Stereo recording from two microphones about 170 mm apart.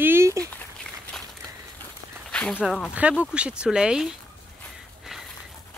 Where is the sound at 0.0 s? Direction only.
15° right (ahead or behind).